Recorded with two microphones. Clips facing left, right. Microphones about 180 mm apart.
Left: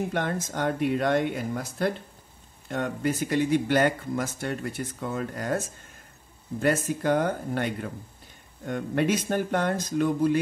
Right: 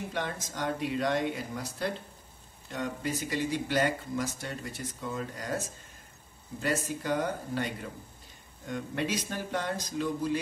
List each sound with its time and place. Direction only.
0.1 s speech: 55° left (ahead or behind)
6.6 s speech: 55° left (ahead or behind)